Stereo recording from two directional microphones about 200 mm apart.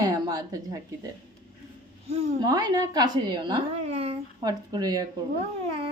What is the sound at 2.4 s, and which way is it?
A woman's voice, 20° right (ahead or behind).